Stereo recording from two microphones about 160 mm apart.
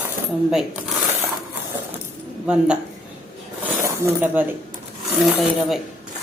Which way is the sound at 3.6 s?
10° right (ahead or behind).